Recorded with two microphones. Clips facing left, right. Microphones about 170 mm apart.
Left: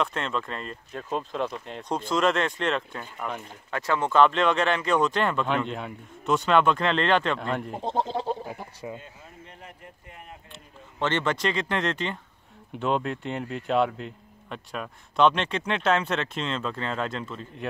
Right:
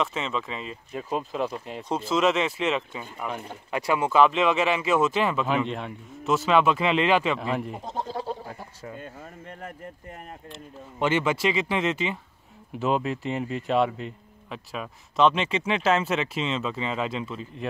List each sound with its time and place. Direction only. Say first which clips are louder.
0.0 s speech: even; centre (ahead or behind)
3.7 s speech: right 1 dB; 15° right (ahead or behind)
7.8 s speech: left 4 dB; 25° left (ahead or behind)
8.9 s speech: right 3 dB; 50° right (ahead or behind)
11.0 s speech: right 2 dB; 10° right (ahead or behind)